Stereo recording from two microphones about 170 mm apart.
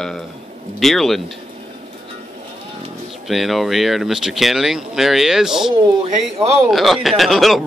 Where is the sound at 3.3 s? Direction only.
Centre (ahead or behind).